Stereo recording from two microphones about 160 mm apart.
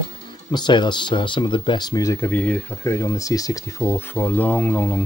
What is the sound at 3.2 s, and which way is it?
Speech, 20° left (ahead or behind).